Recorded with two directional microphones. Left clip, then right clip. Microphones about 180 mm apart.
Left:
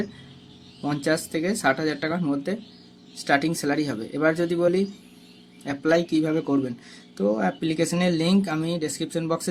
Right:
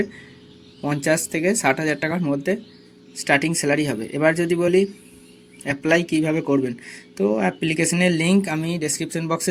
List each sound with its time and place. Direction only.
0.8 s speech: 15° right (ahead or behind)